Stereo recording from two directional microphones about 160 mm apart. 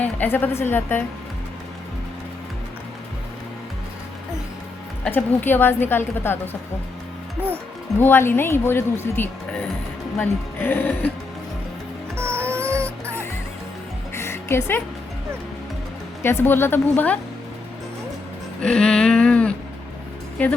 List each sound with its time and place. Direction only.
0.0 s speech: 10° left (ahead or behind)
5.0 s speech: 10° left (ahead or behind)
7.9 s speech: 15° left (ahead or behind)
12.1 s music: 15° right (ahead or behind)
14.1 s music: 15° left (ahead or behind)
16.2 s speech: 15° left (ahead or behind)
18.6 s a sound: 5° left (ahead or behind)
20.4 s speech: 10° left (ahead or behind)